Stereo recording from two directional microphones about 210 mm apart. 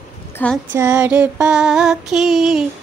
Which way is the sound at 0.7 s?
10° right (ahead or behind).